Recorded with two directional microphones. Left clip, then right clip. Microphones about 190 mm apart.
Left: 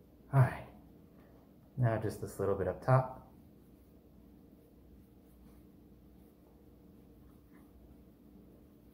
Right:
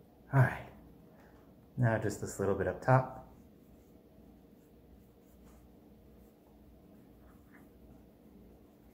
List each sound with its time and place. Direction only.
0.3 s speech: 5° right (ahead or behind)
1.8 s speech: 5° right (ahead or behind)